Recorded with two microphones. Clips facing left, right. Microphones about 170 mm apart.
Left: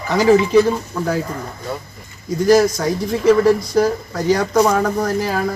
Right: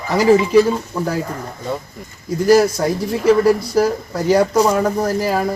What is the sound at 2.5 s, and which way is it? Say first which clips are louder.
Speech: right 1 dB; 5° right (ahead or behind).